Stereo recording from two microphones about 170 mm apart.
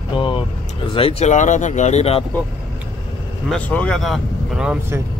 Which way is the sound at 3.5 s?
10° left (ahead or behind).